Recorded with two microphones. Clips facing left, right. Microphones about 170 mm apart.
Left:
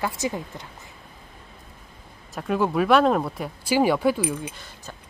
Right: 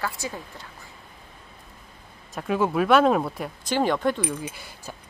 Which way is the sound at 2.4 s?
Centre (ahead or behind).